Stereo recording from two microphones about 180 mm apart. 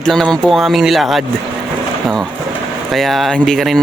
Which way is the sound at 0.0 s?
5° left (ahead or behind).